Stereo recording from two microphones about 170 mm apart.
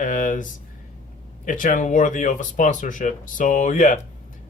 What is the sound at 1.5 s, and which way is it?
Speech, 50° left (ahead or behind).